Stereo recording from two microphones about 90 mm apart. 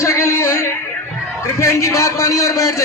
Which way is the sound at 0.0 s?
30° left (ahead or behind).